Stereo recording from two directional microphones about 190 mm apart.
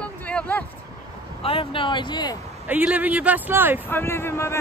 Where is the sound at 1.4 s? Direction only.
30° left (ahead or behind).